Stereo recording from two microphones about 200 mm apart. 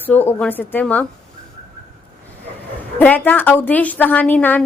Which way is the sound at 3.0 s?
10° left (ahead or behind).